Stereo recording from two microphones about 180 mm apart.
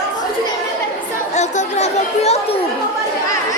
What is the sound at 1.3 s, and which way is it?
Chatter, 40° left (ahead or behind).